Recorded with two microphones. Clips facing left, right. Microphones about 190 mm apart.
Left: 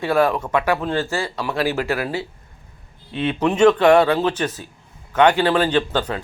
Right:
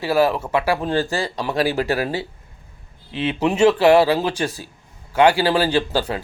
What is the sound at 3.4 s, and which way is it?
A man's voice, 10° right (ahead or behind).